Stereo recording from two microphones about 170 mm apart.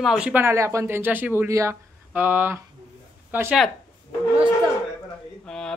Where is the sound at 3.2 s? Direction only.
10° right (ahead or behind).